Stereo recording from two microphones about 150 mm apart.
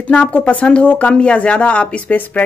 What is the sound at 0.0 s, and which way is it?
Speech, 10° left (ahead or behind).